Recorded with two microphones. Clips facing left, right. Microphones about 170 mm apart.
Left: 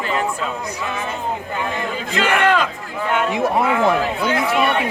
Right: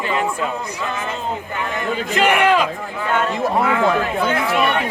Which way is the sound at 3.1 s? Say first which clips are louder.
Even; 15° left (ahead or behind).